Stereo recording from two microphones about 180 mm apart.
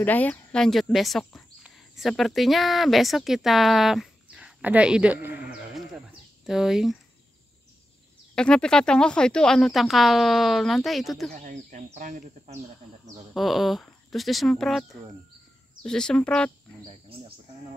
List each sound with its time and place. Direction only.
0.0 s speech: 10° left (ahead or behind)
8.4 s speech: 5° left (ahead or behind)
11.3 s speech: 45° right (ahead or behind)
13.3 s speech: centre (ahead or behind)